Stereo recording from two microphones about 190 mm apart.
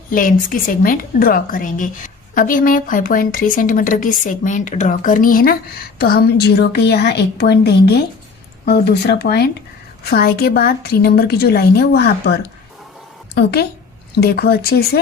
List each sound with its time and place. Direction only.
0.1 s a woman's voice: 45° left (ahead or behind)
13.3 s a woman's voice: 55° left (ahead or behind)